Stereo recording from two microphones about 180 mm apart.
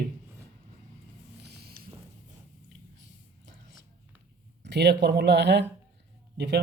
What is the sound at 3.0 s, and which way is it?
Whispering, 75° right (ahead or behind).